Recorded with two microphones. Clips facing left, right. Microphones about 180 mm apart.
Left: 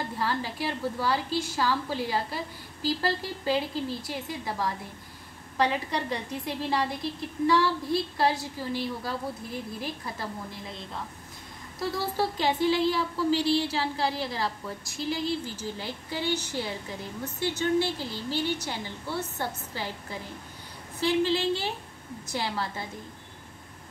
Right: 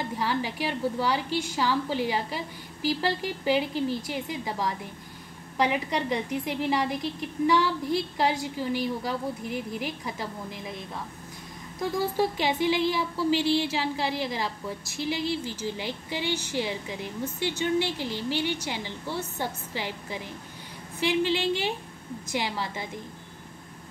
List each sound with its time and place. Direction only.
0.2 s a woman's voice: 15° right (ahead or behind)